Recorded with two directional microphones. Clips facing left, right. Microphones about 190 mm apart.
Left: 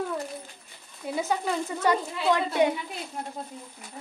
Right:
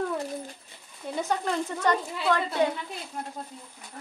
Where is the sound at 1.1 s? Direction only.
5° left (ahead or behind).